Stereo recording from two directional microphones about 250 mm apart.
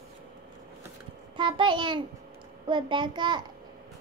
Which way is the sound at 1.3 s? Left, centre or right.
Centre.